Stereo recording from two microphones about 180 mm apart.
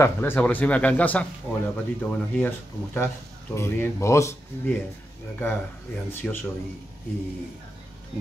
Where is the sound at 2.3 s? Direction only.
10° left (ahead or behind).